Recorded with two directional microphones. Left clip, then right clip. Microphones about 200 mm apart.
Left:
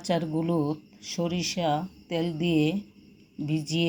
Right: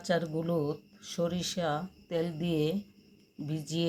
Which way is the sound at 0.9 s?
Centre (ahead or behind).